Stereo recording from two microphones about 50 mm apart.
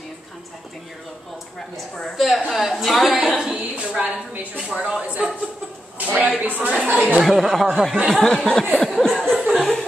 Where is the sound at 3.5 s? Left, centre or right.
Right.